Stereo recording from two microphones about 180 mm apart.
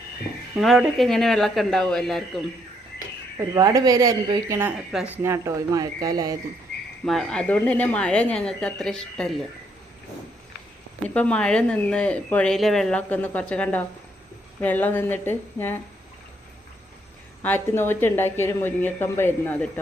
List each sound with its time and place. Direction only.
0.6 s speech: centre (ahead or behind)
3.3 s a woman's voice: 15° right (ahead or behind)
7.0 s speech: centre (ahead or behind)
11.1 s speech: 5° left (ahead or behind)
17.4 s speech: 10° left (ahead or behind)